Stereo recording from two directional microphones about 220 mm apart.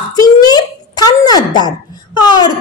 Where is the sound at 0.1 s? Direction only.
15° left (ahead or behind).